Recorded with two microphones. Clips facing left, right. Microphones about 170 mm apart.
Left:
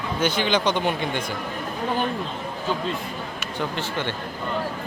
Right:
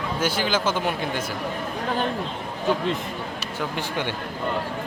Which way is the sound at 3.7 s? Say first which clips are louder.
Even; 10° right (ahead or behind).